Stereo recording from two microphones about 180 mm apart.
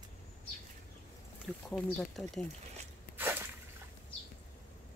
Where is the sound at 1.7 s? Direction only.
5° left (ahead or behind).